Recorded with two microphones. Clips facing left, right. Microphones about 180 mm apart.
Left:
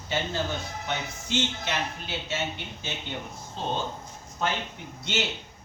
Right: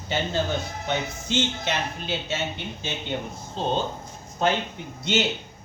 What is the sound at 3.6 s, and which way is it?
Speech, 25° right (ahead or behind).